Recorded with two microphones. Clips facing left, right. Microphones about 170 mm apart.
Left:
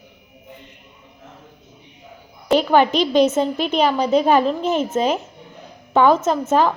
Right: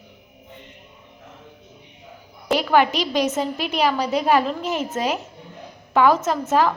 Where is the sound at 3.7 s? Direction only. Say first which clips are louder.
Left 3 dB; 25° left (ahead or behind).